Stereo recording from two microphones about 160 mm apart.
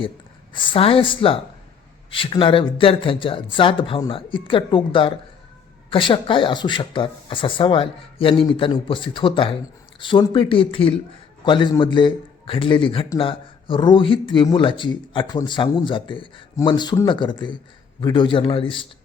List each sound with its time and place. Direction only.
0.5 s speech: 30° left (ahead or behind)